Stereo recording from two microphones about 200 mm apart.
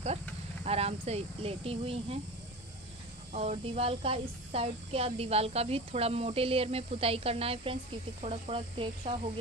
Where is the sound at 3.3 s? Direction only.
30° right (ahead or behind).